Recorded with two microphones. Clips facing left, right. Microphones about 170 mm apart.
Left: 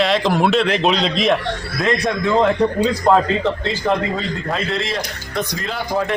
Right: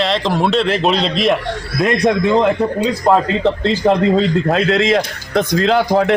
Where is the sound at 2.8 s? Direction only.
5° right (ahead or behind).